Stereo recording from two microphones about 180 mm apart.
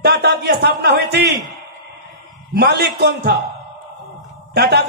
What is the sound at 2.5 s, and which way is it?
Speech, 65° right (ahead or behind).